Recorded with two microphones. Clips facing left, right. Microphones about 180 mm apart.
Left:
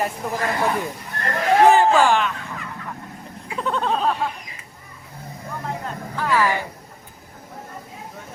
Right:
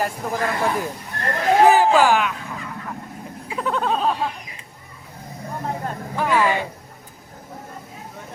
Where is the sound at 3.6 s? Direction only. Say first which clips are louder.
Even; 5° right (ahead or behind).